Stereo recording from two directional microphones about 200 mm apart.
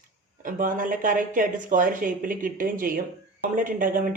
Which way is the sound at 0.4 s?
40° right (ahead or behind).